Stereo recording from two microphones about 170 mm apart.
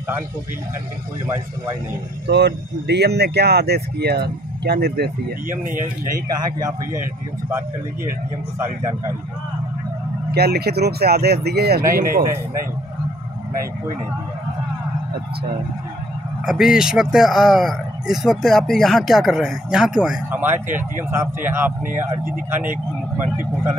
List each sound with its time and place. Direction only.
2.2 s speech: 80° right
5.6 s speech: 55° right (ahead or behind)
6.2 s a man's voice: 20° right (ahead or behind)
10.3 s speech: 70° right (ahead or behind)
11.9 s speech: 60° right (ahead or behind)
16.4 s a man's voice: 5° right (ahead or behind)